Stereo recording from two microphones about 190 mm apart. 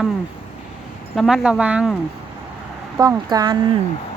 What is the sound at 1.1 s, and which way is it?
Speech, centre (ahead or behind).